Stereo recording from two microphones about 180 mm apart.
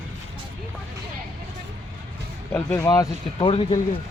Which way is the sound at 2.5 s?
15° left (ahead or behind).